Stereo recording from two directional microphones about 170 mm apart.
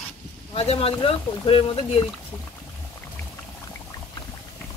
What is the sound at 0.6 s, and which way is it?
Speech, 35° left (ahead or behind).